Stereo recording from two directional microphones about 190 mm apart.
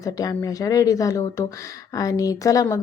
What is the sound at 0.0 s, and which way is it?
Speech, 20° left (ahead or behind).